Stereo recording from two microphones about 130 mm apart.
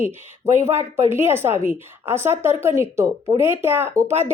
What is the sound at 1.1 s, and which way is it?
A woman's voice, 20° right (ahead or behind).